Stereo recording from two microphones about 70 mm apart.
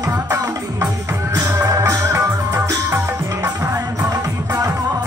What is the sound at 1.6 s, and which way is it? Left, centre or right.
Music, right.